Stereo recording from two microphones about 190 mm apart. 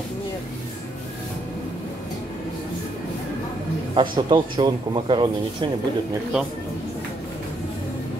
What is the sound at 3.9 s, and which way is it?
A man's voice, 25° right (ahead or behind).